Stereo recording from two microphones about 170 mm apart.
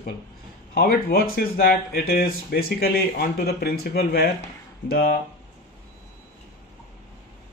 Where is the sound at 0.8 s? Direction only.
65° left (ahead or behind).